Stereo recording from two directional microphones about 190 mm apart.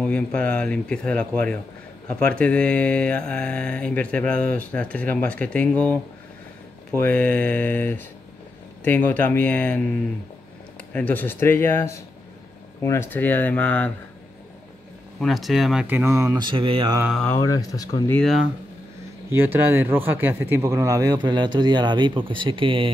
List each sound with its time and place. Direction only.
0.0 s mantra: 5° left (ahead or behind)
7.0 s speech: 5° left (ahead or behind)
10.9 s speech: 10° left (ahead or behind)
15.1 s speech: centre (ahead or behind); by 17.0 s 25° right (ahead or behind)
17.0 s mantra: centre (ahead or behind)
17.3 s speech: 20° left (ahead or behind)
19.3 s speech: 10° right (ahead or behind); by 22.8 s 25° right (ahead or behind)